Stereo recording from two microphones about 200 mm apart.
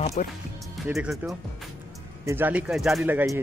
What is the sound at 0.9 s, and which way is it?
Speech, centre (ahead or behind).